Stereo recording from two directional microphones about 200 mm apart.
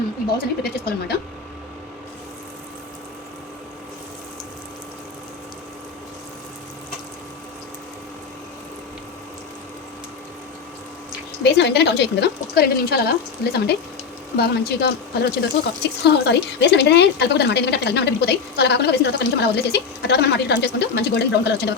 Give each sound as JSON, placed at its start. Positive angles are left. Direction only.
{"t": 0.3, "sound": "speech", "side_deg": 50}
{"t": 11.4, "sound": "speech", "side_deg": 55}